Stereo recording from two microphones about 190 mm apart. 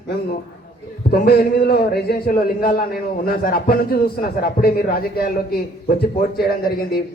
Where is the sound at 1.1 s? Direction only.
55° left (ahead or behind).